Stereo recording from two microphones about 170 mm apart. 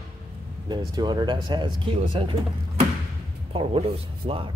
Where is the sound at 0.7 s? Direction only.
25° right (ahead or behind).